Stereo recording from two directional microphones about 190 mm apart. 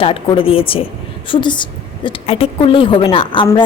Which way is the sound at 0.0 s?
30° left (ahead or behind).